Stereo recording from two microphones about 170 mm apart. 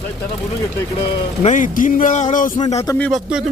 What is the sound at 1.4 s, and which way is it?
Speech, 50° left (ahead or behind).